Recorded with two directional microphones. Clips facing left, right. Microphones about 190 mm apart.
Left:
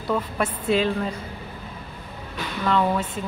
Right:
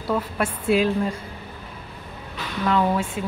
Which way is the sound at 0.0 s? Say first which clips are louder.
Even; 10° right (ahead or behind).